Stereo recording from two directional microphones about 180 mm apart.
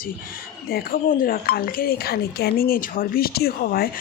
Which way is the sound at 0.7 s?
50° left (ahead or behind).